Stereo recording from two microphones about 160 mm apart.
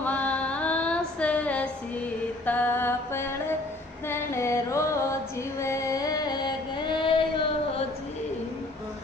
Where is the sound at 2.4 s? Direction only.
10° left (ahead or behind).